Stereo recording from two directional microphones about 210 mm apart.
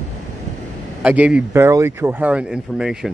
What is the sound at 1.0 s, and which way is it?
Speech, 5° right (ahead or behind).